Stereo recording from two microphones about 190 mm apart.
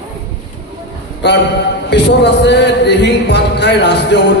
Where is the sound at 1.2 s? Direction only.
70° left (ahead or behind).